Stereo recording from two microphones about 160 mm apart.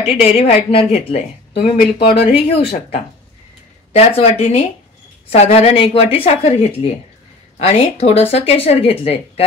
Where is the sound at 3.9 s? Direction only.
40° left (ahead or behind).